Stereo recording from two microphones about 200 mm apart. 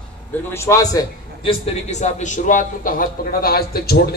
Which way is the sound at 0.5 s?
15° left (ahead or behind).